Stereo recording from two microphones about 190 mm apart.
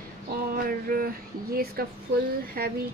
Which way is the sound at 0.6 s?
50° right (ahead or behind).